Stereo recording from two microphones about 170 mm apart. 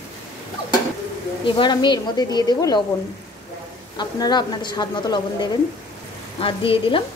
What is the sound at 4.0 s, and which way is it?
A woman's voice, 25° left (ahead or behind).